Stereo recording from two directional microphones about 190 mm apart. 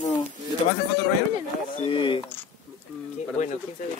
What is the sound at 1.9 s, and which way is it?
Speech, 25° left (ahead or behind).